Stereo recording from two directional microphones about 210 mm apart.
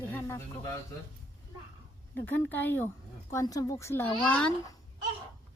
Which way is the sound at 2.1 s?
10° left (ahead or behind).